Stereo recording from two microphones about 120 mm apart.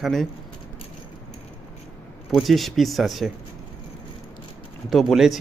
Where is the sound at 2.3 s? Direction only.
Centre (ahead or behind).